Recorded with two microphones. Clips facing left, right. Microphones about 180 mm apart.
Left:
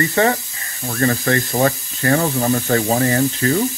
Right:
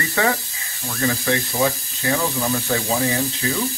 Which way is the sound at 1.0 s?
45° left (ahead or behind).